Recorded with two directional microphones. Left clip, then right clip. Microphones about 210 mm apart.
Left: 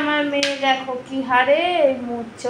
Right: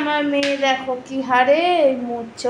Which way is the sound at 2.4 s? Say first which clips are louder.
Right 3 dB; 25° right (ahead or behind).